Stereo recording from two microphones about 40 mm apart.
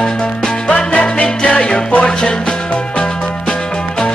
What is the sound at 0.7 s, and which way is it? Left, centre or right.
Music, left.